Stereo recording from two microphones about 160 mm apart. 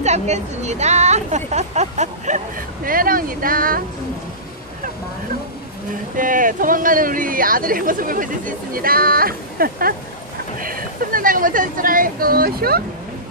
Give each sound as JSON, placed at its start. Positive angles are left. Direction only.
{"t": 0.0, "sound": "speech", "side_deg": -45}
{"t": 6.1, "sound": "speech", "side_deg": -55}